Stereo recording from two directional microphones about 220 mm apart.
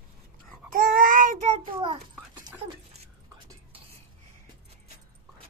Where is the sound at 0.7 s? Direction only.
40° right (ahead or behind).